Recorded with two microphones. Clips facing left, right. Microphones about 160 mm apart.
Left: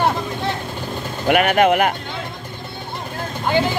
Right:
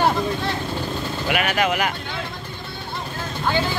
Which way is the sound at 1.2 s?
55° left (ahead or behind).